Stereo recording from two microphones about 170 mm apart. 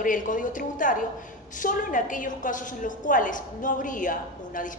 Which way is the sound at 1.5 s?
50° left (ahead or behind).